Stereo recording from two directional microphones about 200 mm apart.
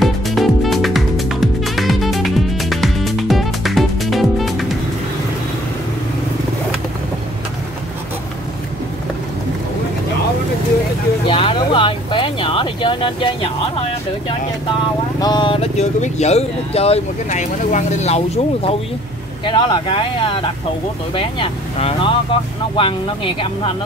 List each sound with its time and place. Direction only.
0.0 s music: centre (ahead or behind)
11.2 s a sound: 25° left (ahead or behind)
15.1 s speech: 20° left (ahead or behind)